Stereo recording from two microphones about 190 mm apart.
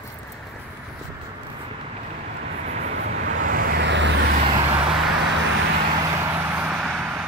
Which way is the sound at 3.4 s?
50° right (ahead or behind).